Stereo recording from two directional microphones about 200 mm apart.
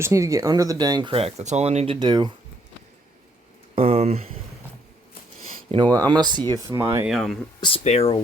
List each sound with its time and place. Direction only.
0.0 s speech: 15° right (ahead or behind)
3.8 s speech: 30° right (ahead or behind)
5.7 s speech: 20° right (ahead or behind)
7.1 s speech: centre (ahead or behind)
7.6 s speech: 30° left (ahead or behind)